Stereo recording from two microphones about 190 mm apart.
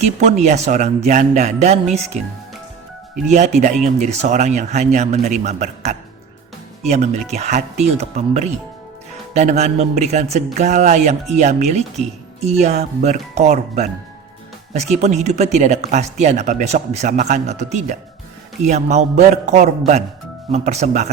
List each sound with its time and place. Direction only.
0.0 s speech: 35° right (ahead or behind)
3.2 s speech: 35° right (ahead or behind)
14.9 s speech: 35° right (ahead or behind)